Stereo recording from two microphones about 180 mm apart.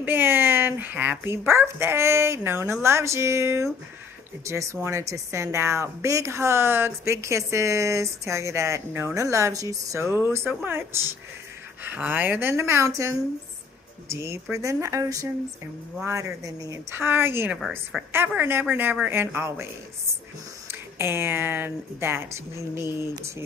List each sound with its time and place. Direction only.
0.0 s a woman's voice: 10° right (ahead or behind)
17.6 s a woman's voice: centre (ahead or behind)
18.1 s a woman's voice: 10° right (ahead or behind)
21.0 s a woman's voice: 15° right (ahead or behind)